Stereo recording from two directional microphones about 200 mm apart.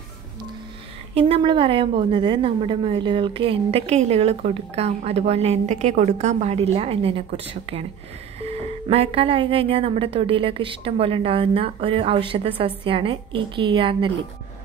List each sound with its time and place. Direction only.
1.1 s a woman's voice: 25° right (ahead or behind)